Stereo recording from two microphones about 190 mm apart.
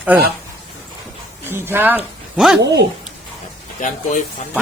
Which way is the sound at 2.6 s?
65° right (ahead or behind).